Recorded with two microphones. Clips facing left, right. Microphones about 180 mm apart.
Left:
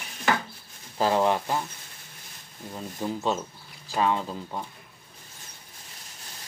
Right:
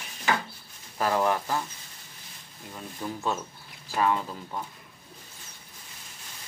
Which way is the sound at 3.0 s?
25° left (ahead or behind).